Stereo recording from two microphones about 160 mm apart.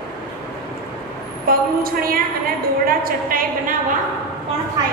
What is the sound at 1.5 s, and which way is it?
A woman's voice, 65° right (ahead or behind).